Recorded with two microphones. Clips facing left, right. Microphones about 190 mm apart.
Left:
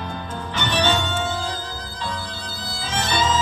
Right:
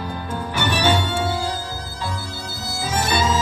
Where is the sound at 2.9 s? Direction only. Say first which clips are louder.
Right 2 dB; 10° right (ahead or behind).